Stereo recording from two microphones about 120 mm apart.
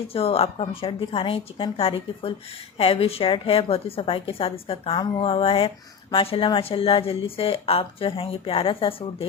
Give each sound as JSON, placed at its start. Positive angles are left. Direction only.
{"t": 0.1, "sound": "a woman's voice", "side_deg": 50}